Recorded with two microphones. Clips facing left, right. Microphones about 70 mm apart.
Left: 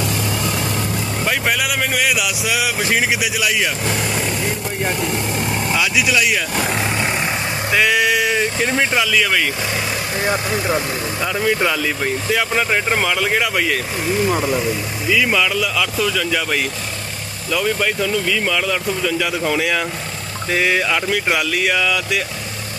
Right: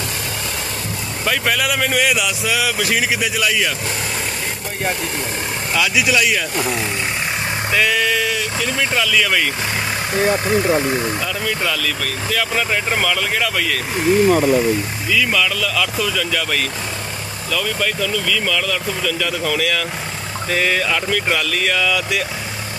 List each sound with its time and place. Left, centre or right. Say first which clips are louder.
1.2 s a man's voice: right 1 dB; centre
5.8 s speech: right 2 dB; centre
7.7 s a sound: left 2 dB; centre
8.4 s speech: left 3 dB; left
8.9 s speech: even; centre
11.3 s speech: left 4 dB; centre
15.0 s speech: left 2 dB; centre